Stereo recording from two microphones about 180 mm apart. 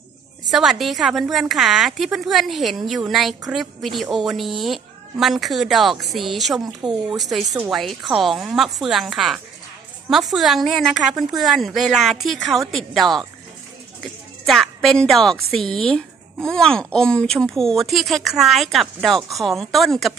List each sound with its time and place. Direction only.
0.5 s a woman's voice: centre (ahead or behind)
14.4 s a woman's voice: centre (ahead or behind)